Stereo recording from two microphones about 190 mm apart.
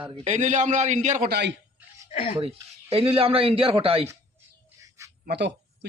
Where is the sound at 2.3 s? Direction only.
30° right (ahead or behind).